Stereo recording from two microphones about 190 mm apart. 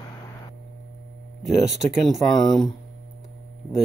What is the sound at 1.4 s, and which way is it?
Speech, centre (ahead or behind).